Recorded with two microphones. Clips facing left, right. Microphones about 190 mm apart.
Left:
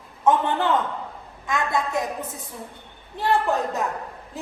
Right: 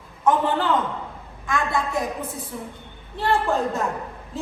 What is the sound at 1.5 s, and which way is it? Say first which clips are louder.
Speech: even; 20° left (ahead or behind).